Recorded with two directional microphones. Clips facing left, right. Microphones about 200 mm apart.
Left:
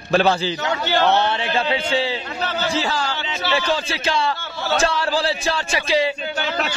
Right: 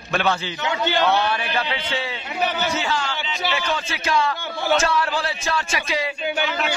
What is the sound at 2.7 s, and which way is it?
A man's voice, 35° left (ahead or behind).